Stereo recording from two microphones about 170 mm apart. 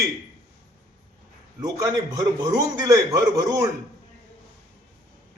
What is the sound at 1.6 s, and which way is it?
Speech, 20° right (ahead or behind).